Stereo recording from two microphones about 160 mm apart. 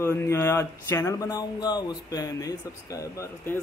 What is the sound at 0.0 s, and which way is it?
Speech, 15° left (ahead or behind).